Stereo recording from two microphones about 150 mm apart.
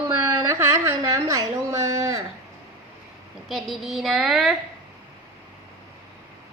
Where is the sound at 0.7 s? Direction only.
25° right (ahead or behind).